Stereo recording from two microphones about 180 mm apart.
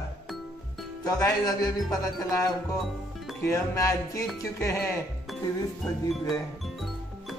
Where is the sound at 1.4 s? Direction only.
20° left (ahead or behind).